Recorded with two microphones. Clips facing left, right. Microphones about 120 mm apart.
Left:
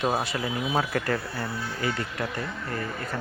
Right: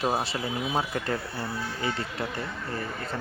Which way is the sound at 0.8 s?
20° right (ahead or behind).